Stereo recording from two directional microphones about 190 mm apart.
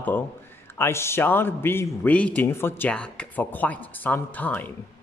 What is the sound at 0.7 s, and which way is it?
A man's voice, 15° left (ahead or behind).